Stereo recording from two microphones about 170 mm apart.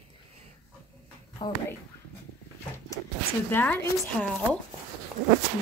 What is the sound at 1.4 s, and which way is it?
Speech, 25° left (ahead or behind).